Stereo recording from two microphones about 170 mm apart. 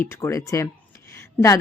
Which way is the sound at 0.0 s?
15° left (ahead or behind).